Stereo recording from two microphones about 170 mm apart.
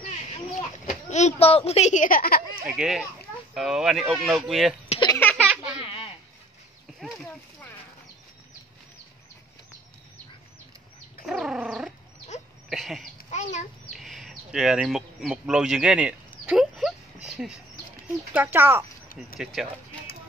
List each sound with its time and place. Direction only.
0.6 s speech: 45° left (ahead or behind); by 2.4 s 60° left (ahead or behind)
2.6 s speech: 5° right (ahead or behind)
5.2 s baby laughter: 10° left (ahead or behind)
11.2 s speech: 5° right (ahead or behind)
12.6 s a sound: centre (ahead or behind)
13.3 s a sound: 45° left (ahead or behind)
13.9 s speech: centre (ahead or behind)
16.4 s a sound: 5° right (ahead or behind)
18.1 s speech: 10° right (ahead or behind)
19.3 s speech: centre (ahead or behind)